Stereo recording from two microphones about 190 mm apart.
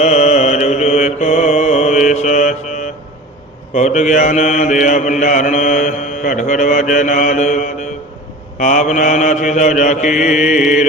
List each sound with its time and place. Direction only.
0.0 s mantra: 35° left (ahead or behind)